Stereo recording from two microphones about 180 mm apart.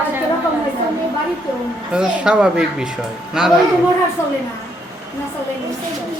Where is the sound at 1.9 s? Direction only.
5° right (ahead or behind).